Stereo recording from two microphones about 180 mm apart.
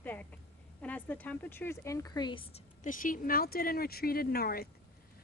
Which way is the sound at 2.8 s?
45° left (ahead or behind).